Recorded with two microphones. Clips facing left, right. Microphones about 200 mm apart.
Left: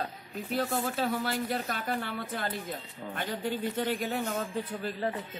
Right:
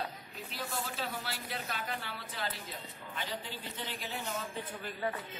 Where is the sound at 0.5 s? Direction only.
50° left (ahead or behind).